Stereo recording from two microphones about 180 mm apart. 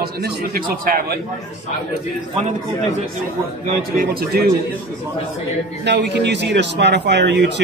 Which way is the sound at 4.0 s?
55° right (ahead or behind).